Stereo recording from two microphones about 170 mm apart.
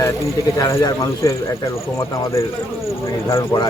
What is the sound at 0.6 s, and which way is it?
Speech, 20° left (ahead or behind).